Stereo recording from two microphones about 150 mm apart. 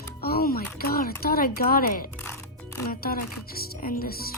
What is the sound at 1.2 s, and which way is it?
Speech, 85° left.